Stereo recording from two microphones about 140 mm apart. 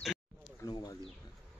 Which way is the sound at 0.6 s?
25° left (ahead or behind).